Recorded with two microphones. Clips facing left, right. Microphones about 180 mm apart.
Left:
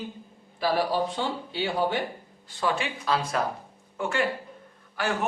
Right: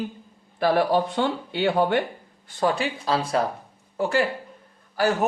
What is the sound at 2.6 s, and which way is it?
Speech, 40° right (ahead or behind).